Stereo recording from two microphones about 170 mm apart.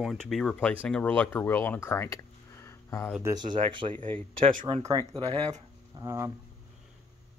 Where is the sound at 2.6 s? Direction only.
15° left (ahead or behind).